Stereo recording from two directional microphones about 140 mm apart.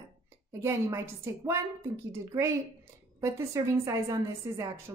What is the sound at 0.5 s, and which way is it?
A woman's voice, 20° right (ahead or behind).